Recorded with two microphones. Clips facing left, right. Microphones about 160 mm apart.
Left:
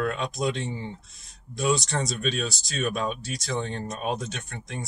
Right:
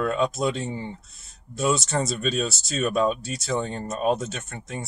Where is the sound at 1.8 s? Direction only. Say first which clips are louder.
Right 3 dB; 5° right (ahead or behind).